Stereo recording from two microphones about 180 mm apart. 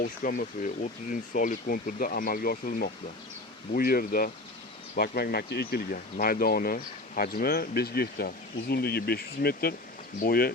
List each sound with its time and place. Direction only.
0.0 s speech: 50° left (ahead or behind)